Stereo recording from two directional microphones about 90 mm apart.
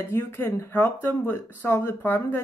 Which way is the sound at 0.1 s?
25° left (ahead or behind).